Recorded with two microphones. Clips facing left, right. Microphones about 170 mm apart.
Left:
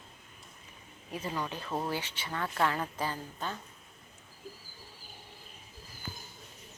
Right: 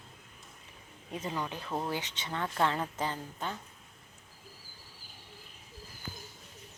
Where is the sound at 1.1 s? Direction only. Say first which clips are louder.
Even; 20° right (ahead or behind).